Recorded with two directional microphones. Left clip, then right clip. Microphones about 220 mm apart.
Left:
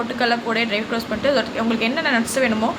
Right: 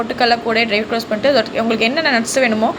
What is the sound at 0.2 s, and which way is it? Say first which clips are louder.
A woman's voice: right 6 dB; 20° right (ahead or behind).